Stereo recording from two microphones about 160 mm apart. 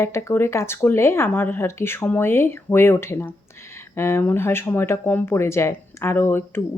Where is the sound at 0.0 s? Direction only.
15° left (ahead or behind).